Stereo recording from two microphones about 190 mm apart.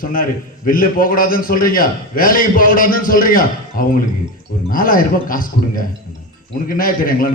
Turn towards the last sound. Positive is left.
turn(degrees=50)  # may be behind; listen again after turning